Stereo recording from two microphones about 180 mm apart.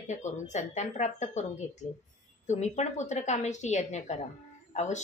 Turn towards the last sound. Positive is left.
turn(degrees=40)  # may be behind; listen again after turning